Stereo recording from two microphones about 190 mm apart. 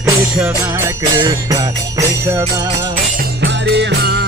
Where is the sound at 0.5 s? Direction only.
20° right (ahead or behind).